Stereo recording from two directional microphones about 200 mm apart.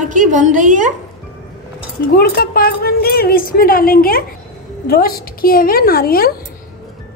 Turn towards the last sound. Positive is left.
turn(degrees=50)  # may be behind; listen again after turning